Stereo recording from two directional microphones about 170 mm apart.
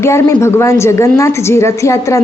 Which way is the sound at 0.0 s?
15° left (ahead or behind).